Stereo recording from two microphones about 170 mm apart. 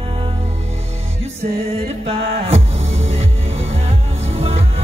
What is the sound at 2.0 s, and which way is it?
Music, 35° right (ahead or behind).